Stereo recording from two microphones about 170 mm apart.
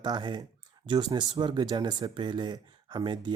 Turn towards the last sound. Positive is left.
turn(degrees=-25)  # may be behind; listen again after turning